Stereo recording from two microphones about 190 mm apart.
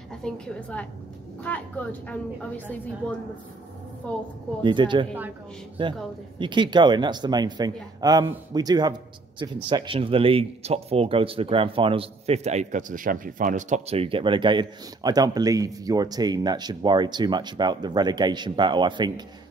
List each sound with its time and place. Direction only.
0.1 s a woman's voice: 5° left (ahead or behind)
4.6 s speech: 25° right (ahead or behind)